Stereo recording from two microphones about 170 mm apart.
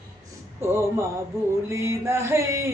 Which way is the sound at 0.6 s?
15° right (ahead or behind).